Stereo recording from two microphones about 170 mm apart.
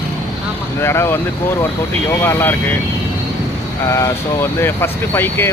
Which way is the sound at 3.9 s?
15° left (ahead or behind).